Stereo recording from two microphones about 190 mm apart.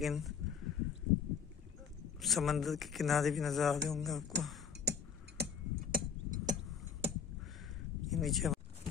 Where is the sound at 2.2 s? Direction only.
Centre (ahead or behind).